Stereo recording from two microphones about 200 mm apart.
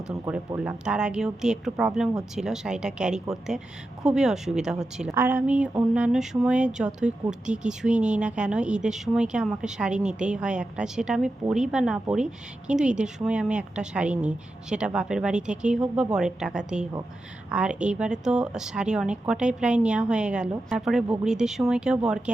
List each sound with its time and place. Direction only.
0.1 s a woman's voice: 5° right (ahead or behind)